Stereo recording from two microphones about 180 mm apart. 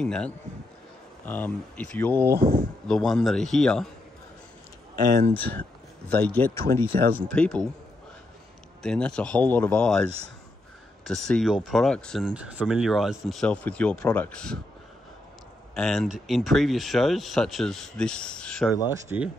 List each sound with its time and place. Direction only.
0.0 s speech: 5° left (ahead or behind)
5.0 s speech: 50° right (ahead or behind)
5.3 s speech: 10° left (ahead or behind)
8.8 s speech: 5° left (ahead or behind)
15.7 s speech: 5° left (ahead or behind)
18.9 s speech: 15° right (ahead or behind)